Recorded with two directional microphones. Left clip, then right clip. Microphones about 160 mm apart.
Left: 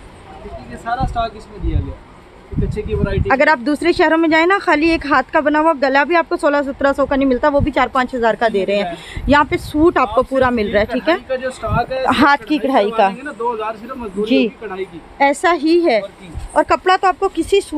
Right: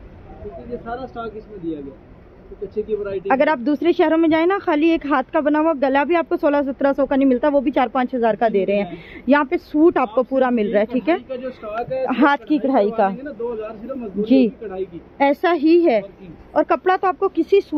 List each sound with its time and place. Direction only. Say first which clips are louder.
0.8 s speech: left 12 dB; 35° left (ahead or behind)
3.3 s speech: left 4 dB; 10° left (ahead or behind)
11.2 s speech: left 7 dB; 25° left (ahead or behind)
12.4 s speech: left 2 dB; 10° left (ahead or behind)
14.2 s speech: left 1 dB; 5° left (ahead or behind)
14.6 s speech: left 2 dB; 25° left (ahead or behind)
15.1 s speech: left 3 dB; centre (ahead or behind)